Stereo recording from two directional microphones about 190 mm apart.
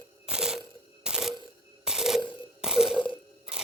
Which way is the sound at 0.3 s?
5° right (ahead or behind).